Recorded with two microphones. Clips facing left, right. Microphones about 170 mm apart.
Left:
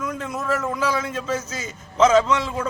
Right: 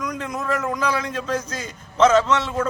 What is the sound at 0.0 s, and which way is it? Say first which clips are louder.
A man's voice: even; 5° left (ahead or behind).